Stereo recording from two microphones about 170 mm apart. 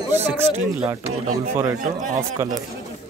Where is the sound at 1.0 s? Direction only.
40° right (ahead or behind).